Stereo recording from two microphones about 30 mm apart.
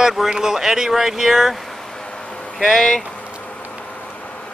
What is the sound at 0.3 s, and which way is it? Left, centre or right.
Speech, centre.